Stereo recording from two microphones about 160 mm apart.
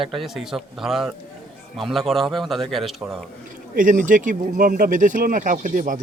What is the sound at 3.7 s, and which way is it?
Speech, 55° right (ahead or behind).